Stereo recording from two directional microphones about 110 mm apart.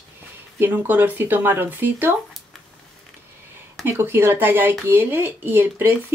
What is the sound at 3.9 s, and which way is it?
Speech, 20° right (ahead or behind).